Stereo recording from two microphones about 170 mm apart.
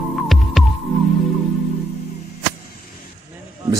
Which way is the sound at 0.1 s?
Centre (ahead or behind).